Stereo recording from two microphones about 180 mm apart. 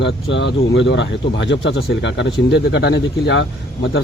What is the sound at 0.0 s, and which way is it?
Speech, 85° left.